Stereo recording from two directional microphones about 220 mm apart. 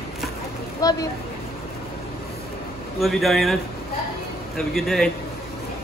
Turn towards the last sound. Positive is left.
turn(degrees=0)  # may be behind; listen again after turning